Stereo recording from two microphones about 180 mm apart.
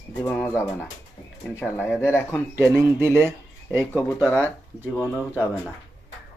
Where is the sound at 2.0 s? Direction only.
15° left (ahead or behind).